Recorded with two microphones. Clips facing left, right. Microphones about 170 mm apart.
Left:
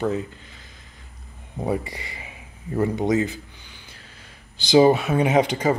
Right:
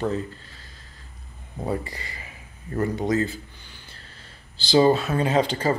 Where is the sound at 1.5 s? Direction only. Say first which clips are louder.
Left 3 dB; 15° left (ahead or behind).